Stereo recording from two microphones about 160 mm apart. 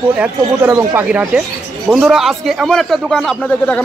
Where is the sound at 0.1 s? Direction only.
10° right (ahead or behind).